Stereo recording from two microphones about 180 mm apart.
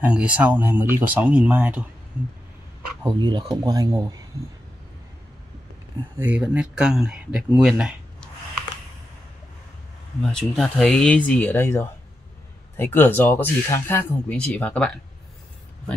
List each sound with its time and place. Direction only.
0.0 s speech: 5° right (ahead or behind)
3.0 s speech: 25° right (ahead or behind)
6.1 s speech: 10° right (ahead or behind)
10.3 s speech: centre (ahead or behind)